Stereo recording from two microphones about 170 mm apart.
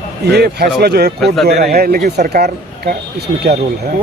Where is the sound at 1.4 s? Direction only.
70° right (ahead or behind).